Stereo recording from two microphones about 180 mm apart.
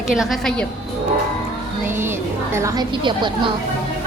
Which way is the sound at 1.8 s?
15° right (ahead or behind).